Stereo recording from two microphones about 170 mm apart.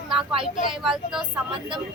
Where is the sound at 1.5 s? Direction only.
30° right (ahead or behind).